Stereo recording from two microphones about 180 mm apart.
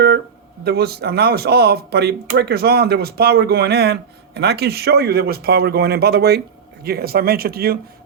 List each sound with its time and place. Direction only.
0.6 s speech: 60° right (ahead or behind)